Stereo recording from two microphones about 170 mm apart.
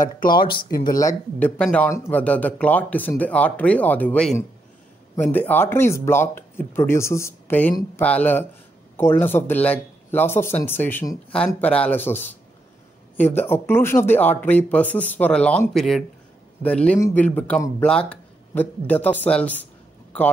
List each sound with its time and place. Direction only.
0.9 s speech: 20° left (ahead or behind)
1.6 s speech: 5° left (ahead or behind)